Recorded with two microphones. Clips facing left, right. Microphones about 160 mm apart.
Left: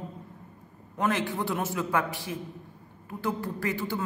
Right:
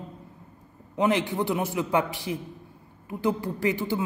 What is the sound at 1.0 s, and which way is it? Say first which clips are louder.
A man's voice: right 4 dB; 20° right (ahead or behind).